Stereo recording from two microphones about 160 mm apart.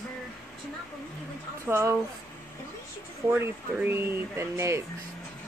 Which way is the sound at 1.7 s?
20° right (ahead or behind).